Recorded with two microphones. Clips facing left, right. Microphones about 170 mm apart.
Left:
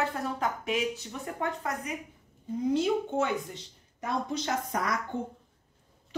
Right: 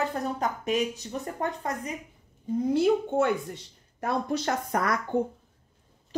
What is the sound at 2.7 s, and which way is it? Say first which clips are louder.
Speech: right 5 dB; 60° right (ahead or behind).